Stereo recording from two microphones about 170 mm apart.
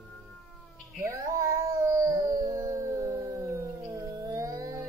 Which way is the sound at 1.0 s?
20° right (ahead or behind).